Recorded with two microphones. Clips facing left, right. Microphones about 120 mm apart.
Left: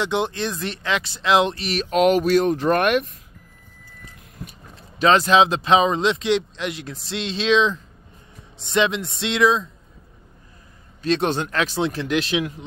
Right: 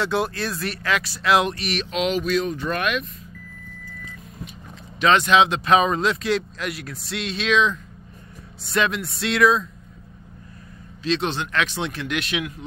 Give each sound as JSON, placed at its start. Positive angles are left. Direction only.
{"t": 0.0, "sound": "speech", "side_deg": 20}
{"t": 1.9, "sound": "speech", "side_deg": 50}
{"t": 4.9, "sound": "speech", "side_deg": 35}
{"t": 11.1, "sound": "speech", "side_deg": 50}